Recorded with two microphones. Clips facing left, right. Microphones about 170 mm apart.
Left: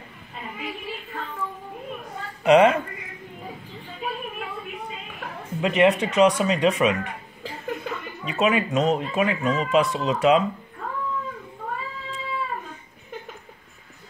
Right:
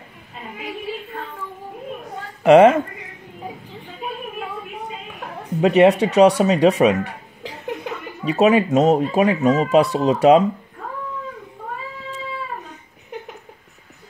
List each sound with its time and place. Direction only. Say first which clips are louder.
2.4 s a woman's voice: right 5 dB; 50° right (ahead or behind)
5.6 s speech: right 6 dB; 40° right (ahead or behind)
8.3 s speech: right 7 dB; 40° right (ahead or behind)